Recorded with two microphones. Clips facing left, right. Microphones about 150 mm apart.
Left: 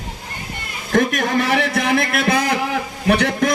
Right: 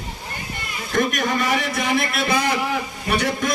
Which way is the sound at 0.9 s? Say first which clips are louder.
Left 4 dB; 55° left (ahead or behind).